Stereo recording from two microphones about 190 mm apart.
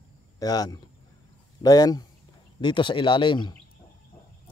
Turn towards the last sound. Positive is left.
turn(degrees=25)  # may be behind; listen again after turning